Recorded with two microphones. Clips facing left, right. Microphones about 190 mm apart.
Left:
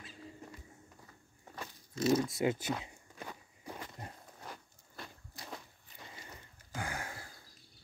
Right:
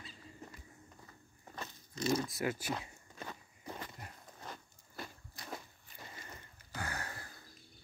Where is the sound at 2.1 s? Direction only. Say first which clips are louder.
Left 4 dB; 25° left (ahead or behind).